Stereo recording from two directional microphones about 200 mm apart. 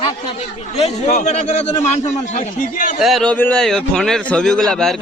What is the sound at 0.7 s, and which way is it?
A man's voice, 35° left (ahead or behind).